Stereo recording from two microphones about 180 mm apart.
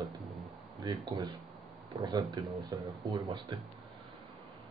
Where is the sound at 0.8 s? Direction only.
25° right (ahead or behind).